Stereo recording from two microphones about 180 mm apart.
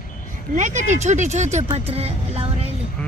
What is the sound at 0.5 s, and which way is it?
Speech, 45° right (ahead or behind).